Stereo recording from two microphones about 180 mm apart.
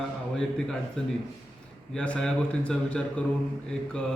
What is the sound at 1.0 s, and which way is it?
A man's voice, 5° left (ahead or behind).